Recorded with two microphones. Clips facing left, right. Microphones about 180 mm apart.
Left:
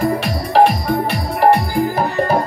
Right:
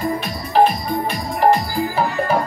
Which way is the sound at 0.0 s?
80° left.